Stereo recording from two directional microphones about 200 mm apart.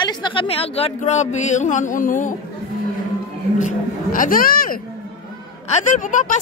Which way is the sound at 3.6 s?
45° left (ahead or behind).